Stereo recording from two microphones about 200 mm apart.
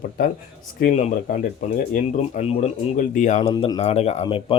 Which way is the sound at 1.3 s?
45° left (ahead or behind).